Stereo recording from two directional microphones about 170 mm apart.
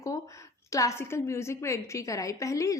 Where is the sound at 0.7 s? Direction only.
15° left (ahead or behind).